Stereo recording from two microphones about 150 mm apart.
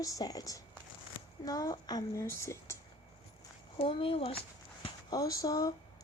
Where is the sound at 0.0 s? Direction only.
25° left (ahead or behind).